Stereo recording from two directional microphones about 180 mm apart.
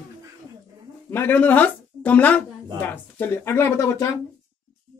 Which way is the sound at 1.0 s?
10° left (ahead or behind).